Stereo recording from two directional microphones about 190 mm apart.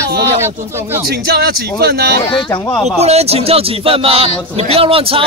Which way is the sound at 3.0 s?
35° right (ahead or behind).